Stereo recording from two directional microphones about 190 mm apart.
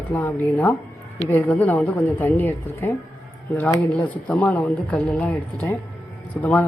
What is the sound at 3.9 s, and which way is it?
A woman's voice, 5° left (ahead or behind).